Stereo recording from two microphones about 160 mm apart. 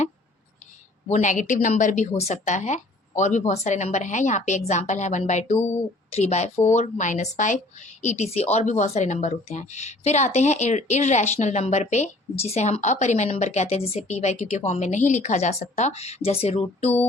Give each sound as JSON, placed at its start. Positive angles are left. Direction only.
{"t": 1.0, "sound": "a woman's voice", "side_deg": 50}